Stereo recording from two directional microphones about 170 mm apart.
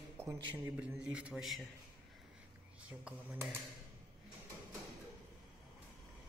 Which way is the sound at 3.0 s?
10° right (ahead or behind).